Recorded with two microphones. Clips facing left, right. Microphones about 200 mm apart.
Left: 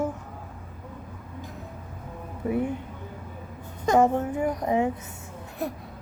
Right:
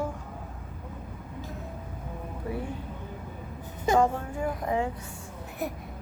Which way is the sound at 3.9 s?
20° left (ahead or behind).